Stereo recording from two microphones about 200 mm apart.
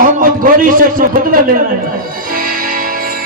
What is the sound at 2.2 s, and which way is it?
Music, 45° right (ahead or behind).